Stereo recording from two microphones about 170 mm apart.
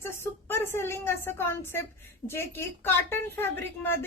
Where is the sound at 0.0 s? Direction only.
15° left (ahead or behind).